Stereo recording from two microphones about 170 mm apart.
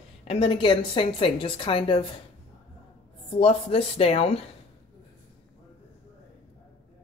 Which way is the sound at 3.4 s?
35° left (ahead or behind).